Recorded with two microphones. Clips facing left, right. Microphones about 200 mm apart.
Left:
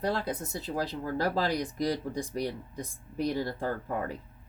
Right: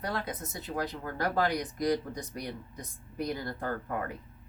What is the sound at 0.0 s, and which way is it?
Speech, 30° left (ahead or behind).